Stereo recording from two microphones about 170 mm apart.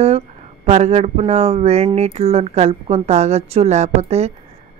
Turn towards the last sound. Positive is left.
turn(degrees=-40)  # may be behind; listen again after turning